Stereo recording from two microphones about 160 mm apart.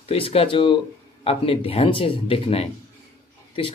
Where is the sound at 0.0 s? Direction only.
35° left (ahead or behind).